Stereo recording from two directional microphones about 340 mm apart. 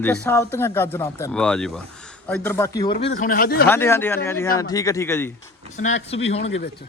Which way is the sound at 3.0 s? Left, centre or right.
Left.